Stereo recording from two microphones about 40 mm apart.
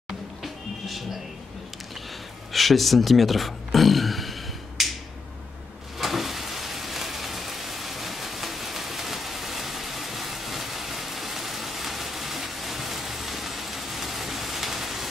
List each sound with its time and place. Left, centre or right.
0.4 s music: centre
2.5 s a sound: centre
5.9 s rain: centre